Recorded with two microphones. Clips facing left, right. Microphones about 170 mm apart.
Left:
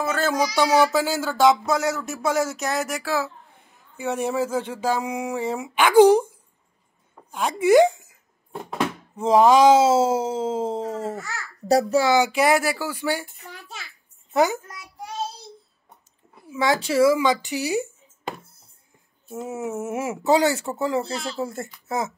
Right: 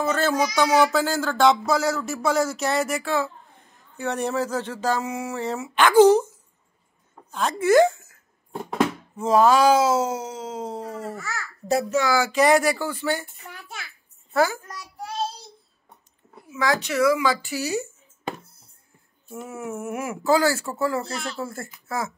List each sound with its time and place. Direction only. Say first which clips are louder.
0.0 s child singing: right 1 dB; 5° left (ahead or behind)
0.6 s speech: left 1 dB; 10° left (ahead or behind); by 12.1 s 35° left (ahead or behind)
12.1 s speech: right 3 dB; 15° left (ahead or behind)
14.3 s a sound: left 1 dB; 20° left (ahead or behind)
16.4 s speech: left 2 dB; 25° left (ahead or behind)
19.2 s speech: left 4 dB; 20° left (ahead or behind)
21.0 s speech: left 3 dB; 30° left (ahead or behind)